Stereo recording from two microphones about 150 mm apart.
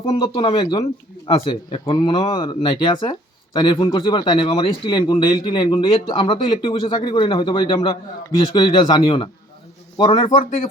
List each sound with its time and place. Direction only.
0.0 s a man's voice: 30° left (ahead or behind)